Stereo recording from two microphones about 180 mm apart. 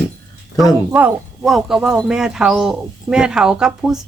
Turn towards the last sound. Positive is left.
turn(degrees=-5)  # may be behind; listen again after turning